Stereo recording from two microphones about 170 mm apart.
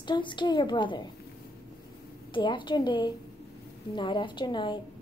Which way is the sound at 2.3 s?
30° left (ahead or behind).